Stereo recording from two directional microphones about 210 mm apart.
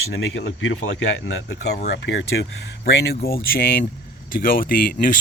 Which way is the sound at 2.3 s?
55° left (ahead or behind).